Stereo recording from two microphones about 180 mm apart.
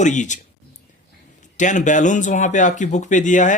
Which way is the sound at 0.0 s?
40° left (ahead or behind).